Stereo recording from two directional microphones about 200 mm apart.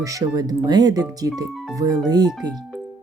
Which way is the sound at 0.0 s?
15° right (ahead or behind).